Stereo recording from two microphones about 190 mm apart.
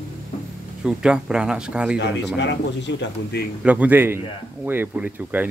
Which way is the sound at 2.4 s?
70° left (ahead or behind).